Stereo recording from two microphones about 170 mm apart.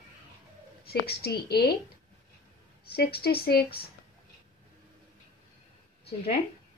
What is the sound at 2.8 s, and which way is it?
Speech, 65° left (ahead or behind).